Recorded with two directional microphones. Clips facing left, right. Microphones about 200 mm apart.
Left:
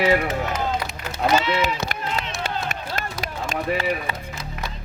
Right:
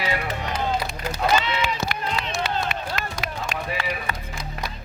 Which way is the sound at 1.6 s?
45° left (ahead or behind).